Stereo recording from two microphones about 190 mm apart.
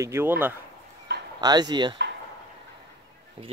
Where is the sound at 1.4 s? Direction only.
20° right (ahead or behind).